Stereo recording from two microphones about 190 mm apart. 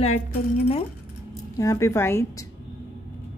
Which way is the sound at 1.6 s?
15° left (ahead or behind).